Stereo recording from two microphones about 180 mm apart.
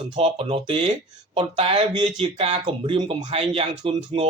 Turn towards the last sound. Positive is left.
turn(degrees=-30)  # may be behind; listen again after turning